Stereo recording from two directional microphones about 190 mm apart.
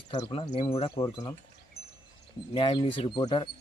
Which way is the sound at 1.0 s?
20° left (ahead or behind).